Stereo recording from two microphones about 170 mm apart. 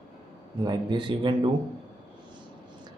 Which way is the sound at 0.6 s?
25° right (ahead or behind).